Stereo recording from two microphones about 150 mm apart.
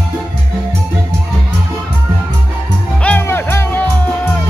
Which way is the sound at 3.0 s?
10° left (ahead or behind).